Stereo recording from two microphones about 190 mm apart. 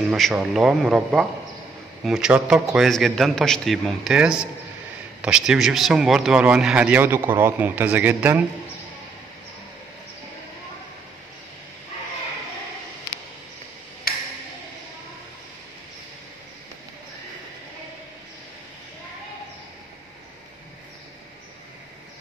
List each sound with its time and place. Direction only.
0.1 s a man's voice: 5° right (ahead or behind)